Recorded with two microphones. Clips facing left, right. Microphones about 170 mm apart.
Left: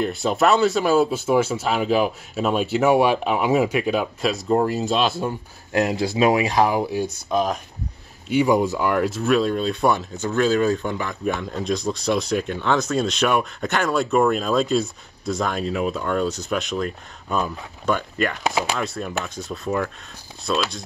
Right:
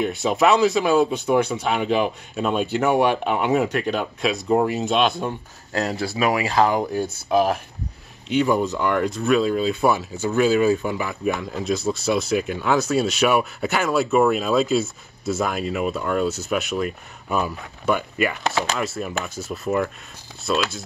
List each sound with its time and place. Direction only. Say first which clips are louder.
0.0 s speech: even; centre (ahead or behind)
5.7 s speech: left 3 dB; 15° left (ahead or behind)
7.2 s speech: right 4 dB; 5° right (ahead or behind)
8.3 s speech: left 2 dB; 10° left (ahead or behind); by 18.4 s 10° right (ahead or behind)
18.4 s speech: left 1 dB; 10° left (ahead or behind)
18.8 s speech: even; 5° right (ahead or behind)